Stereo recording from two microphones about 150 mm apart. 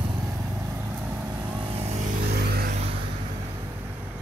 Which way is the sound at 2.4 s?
90° right.